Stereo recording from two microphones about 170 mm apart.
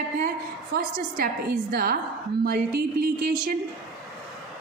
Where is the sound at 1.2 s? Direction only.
65° right (ahead or behind).